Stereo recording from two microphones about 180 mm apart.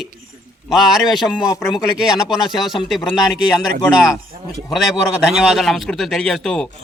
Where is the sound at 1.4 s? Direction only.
20° left (ahead or behind).